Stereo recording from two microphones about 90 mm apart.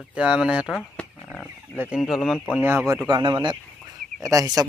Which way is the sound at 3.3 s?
60° right (ahead or behind).